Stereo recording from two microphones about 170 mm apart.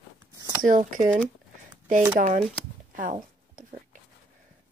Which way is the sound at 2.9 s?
50° right (ahead or behind).